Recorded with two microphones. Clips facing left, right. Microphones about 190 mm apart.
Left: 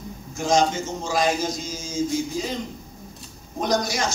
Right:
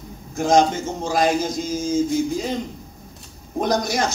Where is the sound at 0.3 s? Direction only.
55° right (ahead or behind).